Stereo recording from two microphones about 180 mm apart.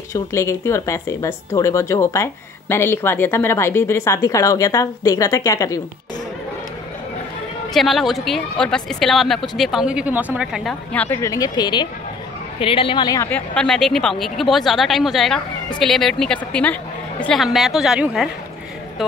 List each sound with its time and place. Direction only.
0.1 s speech: 15° left (ahead or behind)
7.7 s speech: centre (ahead or behind); by 13.3 s 20° left (ahead or behind)
13.3 s speech: 5° left (ahead or behind)